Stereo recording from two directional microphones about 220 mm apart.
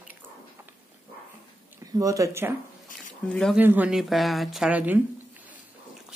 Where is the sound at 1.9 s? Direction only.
15° right (ahead or behind).